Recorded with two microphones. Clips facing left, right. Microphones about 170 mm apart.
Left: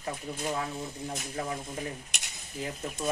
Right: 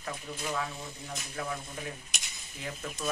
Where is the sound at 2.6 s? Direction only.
30° left (ahead or behind).